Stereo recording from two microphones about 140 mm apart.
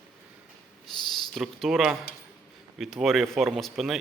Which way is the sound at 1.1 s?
Centre (ahead or behind).